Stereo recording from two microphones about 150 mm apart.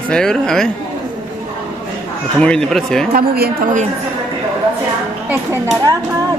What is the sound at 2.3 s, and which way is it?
Speech, 5° left (ahead or behind).